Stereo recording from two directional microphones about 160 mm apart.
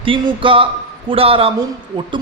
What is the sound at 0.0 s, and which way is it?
A man's voice, 35° right (ahead or behind).